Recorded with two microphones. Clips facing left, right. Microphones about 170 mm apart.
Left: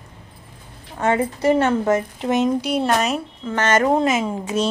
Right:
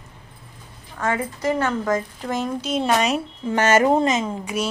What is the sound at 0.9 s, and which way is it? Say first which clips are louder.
A woman's voice: left 5 dB; 25° left (ahead or behind).